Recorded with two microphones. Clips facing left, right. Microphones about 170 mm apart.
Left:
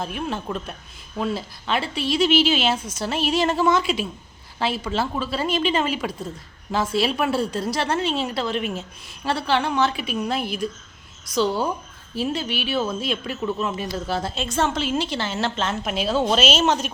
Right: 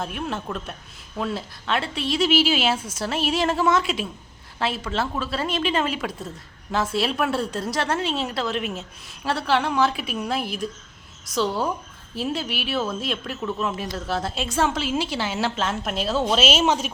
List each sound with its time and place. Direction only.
0.0 s a woman's voice: centre (ahead or behind)